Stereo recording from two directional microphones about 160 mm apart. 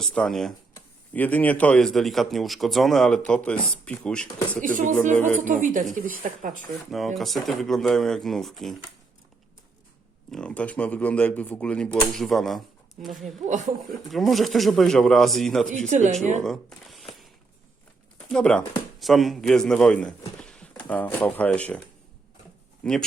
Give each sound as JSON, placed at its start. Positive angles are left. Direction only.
{"t": 0.0, "sound": "speech", "side_deg": 5}
{"t": 4.6, "sound": "speech", "side_deg": -55}
{"t": 6.9, "sound": "speech", "side_deg": 0}
{"t": 10.3, "sound": "speech", "side_deg": 5}
{"t": 13.4, "sound": "speech", "side_deg": -50}
{"t": 14.1, "sound": "speech", "side_deg": 0}
{"t": 15.9, "sound": "speech", "side_deg": -50}
{"t": 16.4, "sound": "a sound", "side_deg": 0}
{"t": 18.3, "sound": "speech", "side_deg": 5}
{"t": 22.8, "sound": "speech", "side_deg": 5}